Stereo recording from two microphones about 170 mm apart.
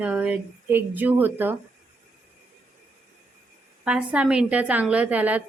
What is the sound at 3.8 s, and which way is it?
Speech, 5° right (ahead or behind).